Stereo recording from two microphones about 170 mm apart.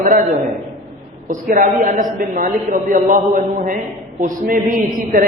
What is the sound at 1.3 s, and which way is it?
A woman's voice, 50° right (ahead or behind).